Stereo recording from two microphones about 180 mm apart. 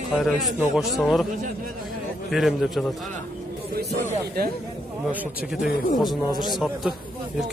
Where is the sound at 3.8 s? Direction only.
60° right (ahead or behind).